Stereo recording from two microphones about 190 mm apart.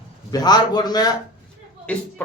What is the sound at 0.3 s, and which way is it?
Speech, 20° left (ahead or behind).